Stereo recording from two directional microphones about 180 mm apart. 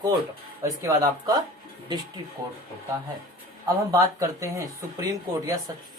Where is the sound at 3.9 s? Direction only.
15° right (ahead or behind).